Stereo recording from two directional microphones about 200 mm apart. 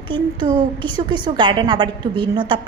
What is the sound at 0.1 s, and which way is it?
A woman's voice, 25° right (ahead or behind).